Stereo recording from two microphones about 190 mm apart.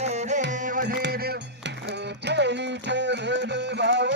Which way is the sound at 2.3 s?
65° right (ahead or behind).